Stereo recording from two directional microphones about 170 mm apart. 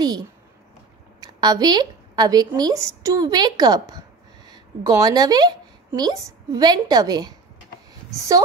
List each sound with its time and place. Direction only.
1.2 s a woman's voice: 25° right (ahead or behind)